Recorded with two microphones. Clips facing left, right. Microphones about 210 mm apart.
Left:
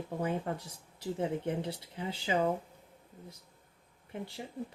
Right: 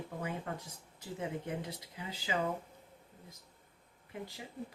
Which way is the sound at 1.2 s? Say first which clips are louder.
Left 5 dB; 30° left (ahead or behind).